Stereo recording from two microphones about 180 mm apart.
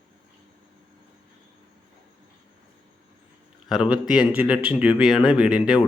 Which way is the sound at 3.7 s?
Centre (ahead or behind).